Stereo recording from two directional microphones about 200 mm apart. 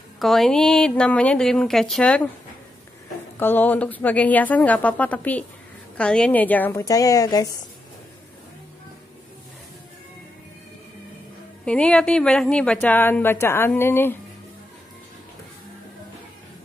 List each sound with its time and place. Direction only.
0.2 s speech: centre (ahead or behind)
3.3 s a woman's voice: 10° left (ahead or behind)
11.6 s a woman's voice: 5° left (ahead or behind)